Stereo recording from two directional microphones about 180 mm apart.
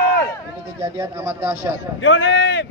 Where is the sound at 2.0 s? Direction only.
90° left.